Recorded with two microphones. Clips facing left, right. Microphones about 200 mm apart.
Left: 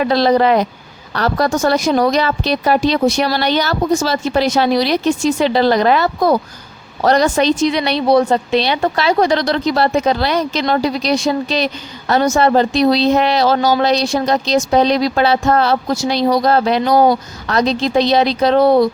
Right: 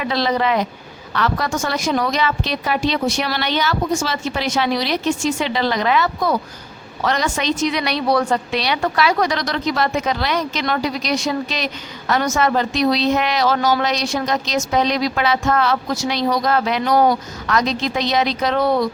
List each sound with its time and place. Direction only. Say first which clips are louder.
0.0 s a woman's voice: left 7 dB; 35° left (ahead or behind)